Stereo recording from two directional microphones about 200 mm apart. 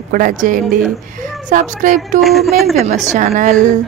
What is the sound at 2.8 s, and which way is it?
Speech, 35° right (ahead or behind).